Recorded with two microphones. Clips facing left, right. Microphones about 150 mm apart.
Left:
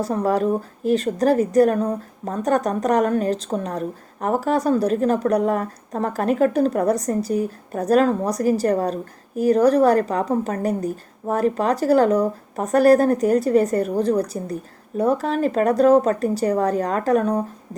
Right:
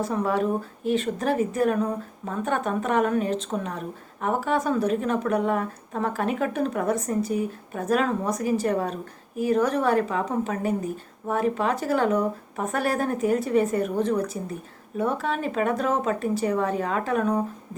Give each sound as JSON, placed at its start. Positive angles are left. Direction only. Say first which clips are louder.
{"t": 0.0, "sound": "speech", "louder": "left 4 dB", "side_deg": 35}